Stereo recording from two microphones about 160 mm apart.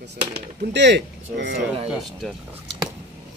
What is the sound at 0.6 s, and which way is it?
Speech, 90° right.